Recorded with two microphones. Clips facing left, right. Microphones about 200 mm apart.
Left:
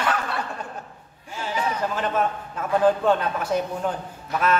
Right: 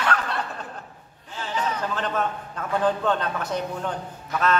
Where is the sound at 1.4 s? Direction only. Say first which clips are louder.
Left 2 dB; 10° left (ahead or behind).